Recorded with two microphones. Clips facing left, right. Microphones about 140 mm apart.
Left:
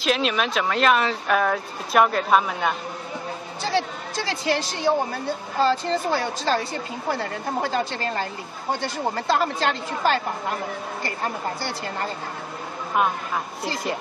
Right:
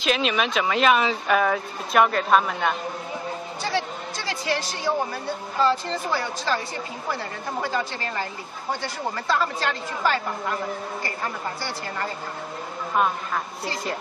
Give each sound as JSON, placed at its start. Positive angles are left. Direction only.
{"t": 0.0, "sound": "speech", "side_deg": 0}
{"t": 3.7, "sound": "a sound", "side_deg": 30}
{"t": 5.6, "sound": "speech", "side_deg": 35}
{"t": 7.6, "sound": "a woman's voice", "side_deg": 35}
{"t": 12.9, "sound": "speech", "side_deg": 5}